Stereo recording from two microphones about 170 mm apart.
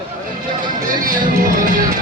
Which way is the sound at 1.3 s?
55° right (ahead or behind).